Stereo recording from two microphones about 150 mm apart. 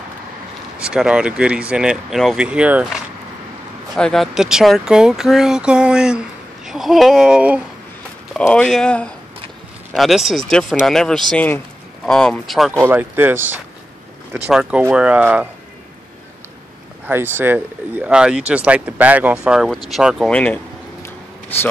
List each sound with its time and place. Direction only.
0.7 s speech: 5° right (ahead or behind)
8.3 s speech: 5° left (ahead or behind)
12.8 s speech: 15° right (ahead or behind)
17.1 s speech: 15° right (ahead or behind)
20.2 s a sound: 10° left (ahead or behind)